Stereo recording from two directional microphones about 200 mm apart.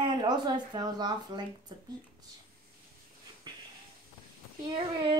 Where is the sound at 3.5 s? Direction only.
20° right (ahead or behind).